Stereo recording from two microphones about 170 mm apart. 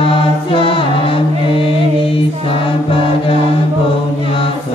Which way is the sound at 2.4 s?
30° left (ahead or behind).